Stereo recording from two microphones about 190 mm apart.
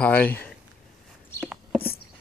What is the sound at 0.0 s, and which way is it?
Speech, 10° left (ahead or behind).